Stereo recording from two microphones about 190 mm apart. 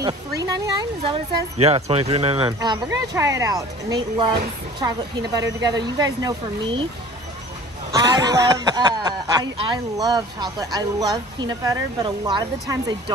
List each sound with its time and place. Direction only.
0.5 s speech: 20° right (ahead or behind)
7.9 s speech: 20° right (ahead or behind)